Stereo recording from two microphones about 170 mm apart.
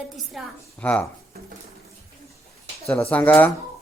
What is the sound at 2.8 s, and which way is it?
Speech, 10° left (ahead or behind).